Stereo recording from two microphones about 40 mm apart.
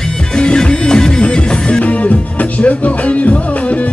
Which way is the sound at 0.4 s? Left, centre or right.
Left.